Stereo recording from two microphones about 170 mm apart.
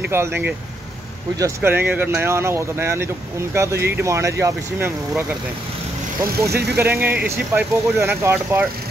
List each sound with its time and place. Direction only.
0.0 s speech: 15° right (ahead or behind)
6.5 s speech: 75° right (ahead or behind)
6.8 s speech: 15° right (ahead or behind)